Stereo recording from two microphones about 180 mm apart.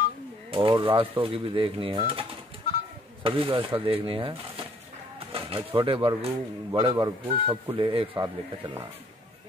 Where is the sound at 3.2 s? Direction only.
30° right (ahead or behind).